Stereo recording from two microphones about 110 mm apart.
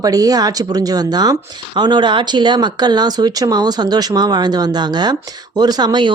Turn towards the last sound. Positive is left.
turn(degrees=-40)  # may be behind; listen again after turning